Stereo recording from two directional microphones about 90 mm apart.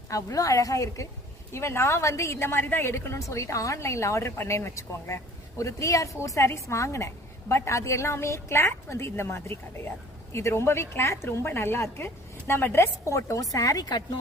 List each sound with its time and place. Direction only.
0.1 s a woman's voice: 40° left (ahead or behind)